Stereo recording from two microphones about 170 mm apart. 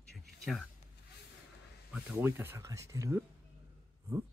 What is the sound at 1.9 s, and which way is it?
Speech, 10° right (ahead or behind).